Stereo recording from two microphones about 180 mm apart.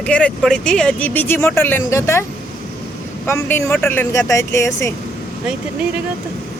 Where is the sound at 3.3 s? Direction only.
15° left (ahead or behind).